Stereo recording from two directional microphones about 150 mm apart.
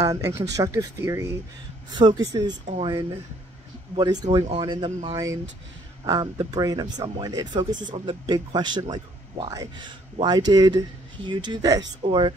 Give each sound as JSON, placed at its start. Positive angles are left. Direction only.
{"t": 0.1, "sound": "speech", "side_deg": -20}
{"t": 3.9, "sound": "speech", "side_deg": -30}